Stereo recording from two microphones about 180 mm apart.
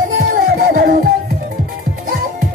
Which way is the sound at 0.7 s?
55° right (ahead or behind).